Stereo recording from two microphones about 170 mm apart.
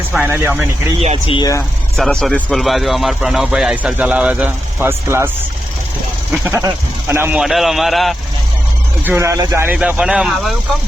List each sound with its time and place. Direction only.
0.1 s speech: 10° right (ahead or behind)
1.3 s speech: 25° left (ahead or behind)
2.0 s speech: 5° left (ahead or behind); by 5.3 s 15° right (ahead or behind)
6.3 s speech: 10° right (ahead or behind)
9.0 s speech: 15° right (ahead or behind)
9.7 s speech: 5° right (ahead or behind)